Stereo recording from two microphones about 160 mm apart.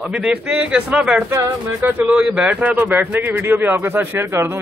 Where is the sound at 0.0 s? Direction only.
5° right (ahead or behind).